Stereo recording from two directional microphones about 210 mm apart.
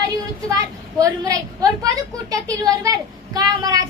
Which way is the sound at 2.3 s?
15° right (ahead or behind).